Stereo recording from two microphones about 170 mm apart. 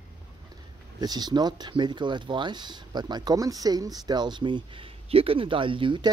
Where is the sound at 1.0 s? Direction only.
25° right (ahead or behind).